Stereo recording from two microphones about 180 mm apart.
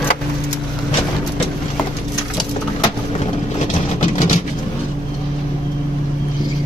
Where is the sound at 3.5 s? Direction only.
45° left (ahead or behind).